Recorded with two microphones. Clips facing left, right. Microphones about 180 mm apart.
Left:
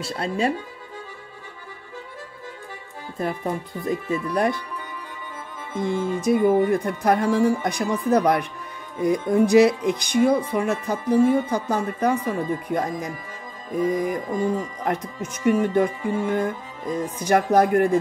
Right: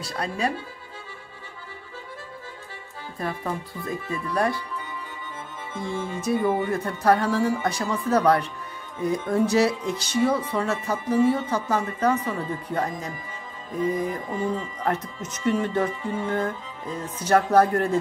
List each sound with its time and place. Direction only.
0.0 s speech: 30° left (ahead or behind)
3.8 s speech: 20° left (ahead or behind)
5.8 s speech: 15° left (ahead or behind)